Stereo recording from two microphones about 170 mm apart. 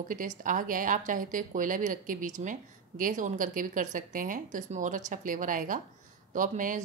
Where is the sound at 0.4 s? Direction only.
50° right (ahead or behind).